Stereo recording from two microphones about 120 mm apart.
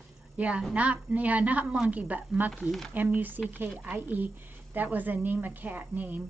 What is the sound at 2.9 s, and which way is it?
Speech, 15° right (ahead or behind).